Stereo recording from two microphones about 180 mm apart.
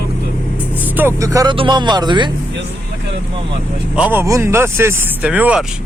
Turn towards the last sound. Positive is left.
turn(degrees=-5)  # may be behind; listen again after turning